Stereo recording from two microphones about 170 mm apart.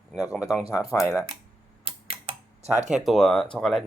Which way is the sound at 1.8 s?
35° right (ahead or behind).